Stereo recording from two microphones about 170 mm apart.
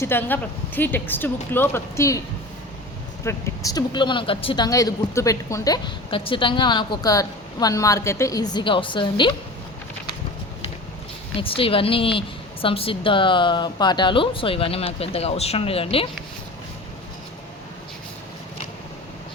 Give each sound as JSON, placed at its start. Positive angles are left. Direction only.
{"t": 0.0, "sound": "a woman's voice", "side_deg": 15}
{"t": 3.2, "sound": "speech", "side_deg": 20}
{"t": 11.3, "sound": "a woman's voice", "side_deg": 30}